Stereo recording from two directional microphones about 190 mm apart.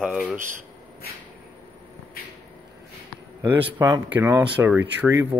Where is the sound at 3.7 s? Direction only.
20° right (ahead or behind).